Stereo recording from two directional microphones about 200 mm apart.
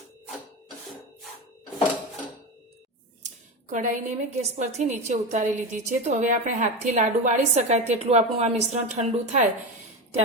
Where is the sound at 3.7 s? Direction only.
40° right (ahead or behind).